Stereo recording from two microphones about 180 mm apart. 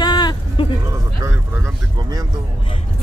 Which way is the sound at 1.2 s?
20° right (ahead or behind).